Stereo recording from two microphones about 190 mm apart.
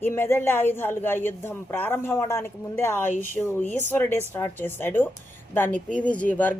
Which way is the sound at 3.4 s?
10° left (ahead or behind).